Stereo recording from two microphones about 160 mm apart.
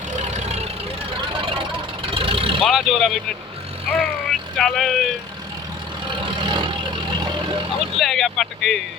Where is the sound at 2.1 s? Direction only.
35° right (ahead or behind).